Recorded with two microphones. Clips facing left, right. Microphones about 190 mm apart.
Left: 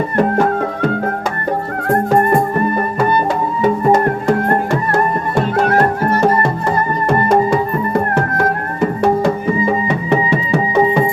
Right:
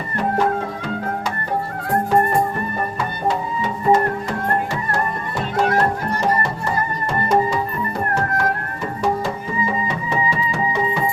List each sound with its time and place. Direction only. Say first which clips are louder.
0.2 s music: left 5 dB; 55° left (ahead or behind)